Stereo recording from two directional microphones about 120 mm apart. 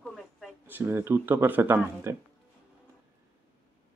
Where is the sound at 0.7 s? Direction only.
15° right (ahead or behind).